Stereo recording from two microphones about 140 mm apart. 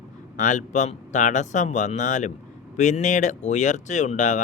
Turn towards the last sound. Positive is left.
turn(degrees=60)  # may be behind; listen again after turning